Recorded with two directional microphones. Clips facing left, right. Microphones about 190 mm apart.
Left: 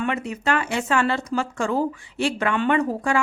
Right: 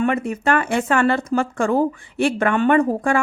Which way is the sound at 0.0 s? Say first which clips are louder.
Right 5 dB; 50° right (ahead or behind).